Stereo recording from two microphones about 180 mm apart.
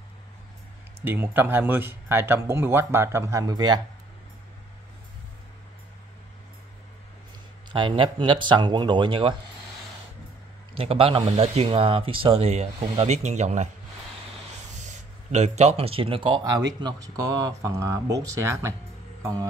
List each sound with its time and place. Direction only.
1.0 s speech: 10° right (ahead or behind)
7.7 s speech: 25° right (ahead or behind)
10.7 s speech: 30° right (ahead or behind)
14.8 s speech: 40° right (ahead or behind); by 18.8 s 15° right (ahead or behind)